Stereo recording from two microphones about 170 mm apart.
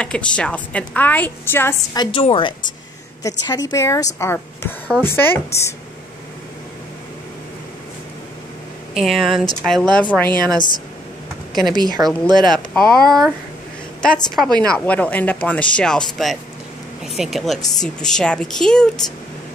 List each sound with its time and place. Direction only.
0.0 s speech: 5° left (ahead or behind)
2.0 s a woman's voice: 30° left (ahead or behind); by 5.8 s 15° left (ahead or behind)
8.9 s a woman's voice: centre (ahead or behind)
11.6 s a woman's voice: 25° right (ahead or behind)
12.5 s speech: 5° left (ahead or behind)